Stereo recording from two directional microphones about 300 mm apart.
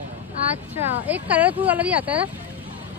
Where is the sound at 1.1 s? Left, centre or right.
Centre.